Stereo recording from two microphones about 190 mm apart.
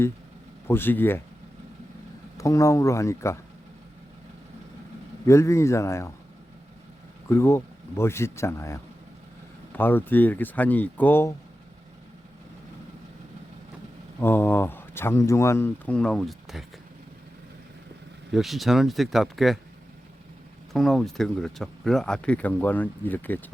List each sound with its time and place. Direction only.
0.7 s speech: 10° left (ahead or behind)
2.4 s speech: 15° left (ahead or behind)
5.2 s speech: 15° left (ahead or behind)
7.3 s speech: 15° left (ahead or behind)
14.2 s speech: 10° left (ahead or behind)
18.3 s speech: centre (ahead or behind)
20.7 s speech: centre (ahead or behind)